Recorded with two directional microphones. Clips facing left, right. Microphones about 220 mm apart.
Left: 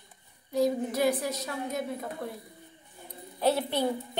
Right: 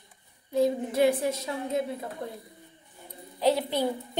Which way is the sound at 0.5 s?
25° right (ahead or behind).